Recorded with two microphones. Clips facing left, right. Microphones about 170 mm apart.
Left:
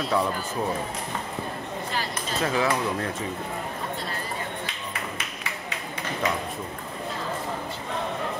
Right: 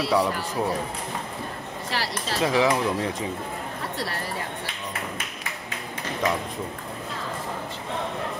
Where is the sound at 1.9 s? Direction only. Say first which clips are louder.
Right 4 dB; 90° right.